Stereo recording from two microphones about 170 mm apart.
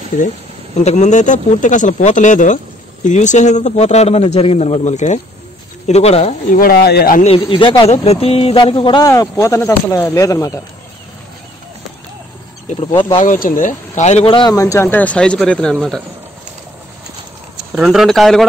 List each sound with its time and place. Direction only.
0.7 s speech: 45° left (ahead or behind)
6.6 s speech: 65° left (ahead or behind)
7.2 s speech: 30° left (ahead or behind)
13.1 s speech: 50° left (ahead or behind); by 14.5 s 30° left (ahead or behind)
14.5 s speech: 20° left (ahead or behind); by 16.0 s centre (ahead or behind)
17.7 s speech: centre (ahead or behind)